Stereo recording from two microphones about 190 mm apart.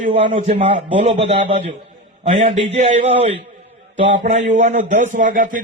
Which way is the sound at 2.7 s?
35° right (ahead or behind).